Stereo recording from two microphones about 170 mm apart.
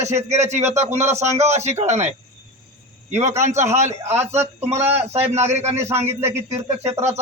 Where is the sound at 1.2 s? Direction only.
40° right (ahead or behind).